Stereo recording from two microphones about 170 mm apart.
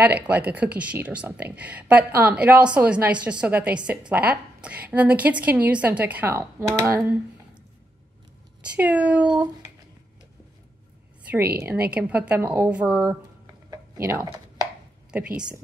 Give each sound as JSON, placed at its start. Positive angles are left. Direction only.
{"t": 0.3, "sound": "speech", "side_deg": -10}
{"t": 8.6, "sound": "speech", "side_deg": -10}
{"t": 11.9, "sound": "speech", "side_deg": -10}
{"t": 13.7, "sound": "a sound", "side_deg": -20}
{"t": 15.0, "sound": "speech", "side_deg": -5}